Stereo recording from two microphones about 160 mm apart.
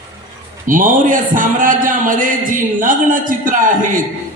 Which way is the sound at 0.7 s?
55° right (ahead or behind).